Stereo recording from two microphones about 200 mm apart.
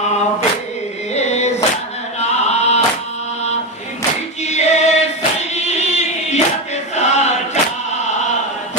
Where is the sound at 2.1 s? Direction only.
35° left (ahead or behind).